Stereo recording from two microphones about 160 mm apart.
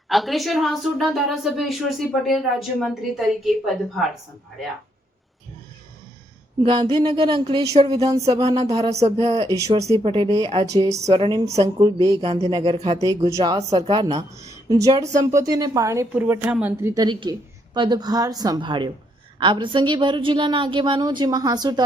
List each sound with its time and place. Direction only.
0.1 s a woman's voice: centre (ahead or behind)
6.6 s a woman's voice: 35° right (ahead or behind)
8.7 s a sound: 40° right (ahead or behind)
9.5 s a woman's voice: 20° right (ahead or behind)
10.0 s a woman's voice: 30° right (ahead or behind)
11.1 s a woman's voice: 30° right (ahead or behind)
12.2 s a sound: 40° right (ahead or behind)
12.5 s a woman's voice: 25° right (ahead or behind)
12.7 s a sound: 35° right (ahead or behind)
13.0 s a woman's voice: 20° right (ahead or behind)
13.6 s a woman's voice: 40° right (ahead or behind); by 16.9 s 10° right (ahead or behind)
16.9 s a woman's voice: 25° right (ahead or behind)